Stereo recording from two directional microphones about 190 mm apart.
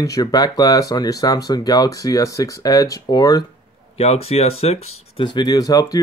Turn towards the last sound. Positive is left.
turn(degrees=20)  # may be behind; listen again after turning